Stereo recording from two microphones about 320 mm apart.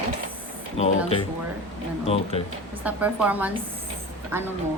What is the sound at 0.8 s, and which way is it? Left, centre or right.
Speech, centre.